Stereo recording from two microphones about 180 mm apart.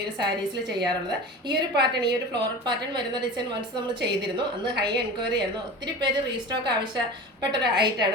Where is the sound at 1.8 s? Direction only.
25° right (ahead or behind).